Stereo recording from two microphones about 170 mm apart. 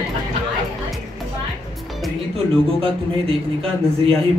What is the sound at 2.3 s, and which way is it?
Speech, 35° right (ahead or behind).